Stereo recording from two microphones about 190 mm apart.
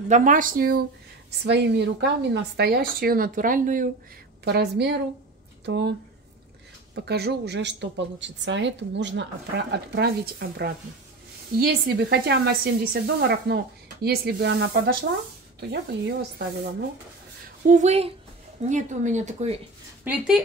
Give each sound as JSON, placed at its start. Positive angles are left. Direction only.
{"t": 0.1, "sound": "speech", "side_deg": -45}
{"t": 1.4, "sound": "speech", "side_deg": -65}
{"t": 4.5, "sound": "speech", "side_deg": -60}
{"t": 7.1, "sound": "speech", "side_deg": -60}
{"t": 17.6, "sound": "speech", "side_deg": -40}
{"t": 20.1, "sound": "speech", "side_deg": -5}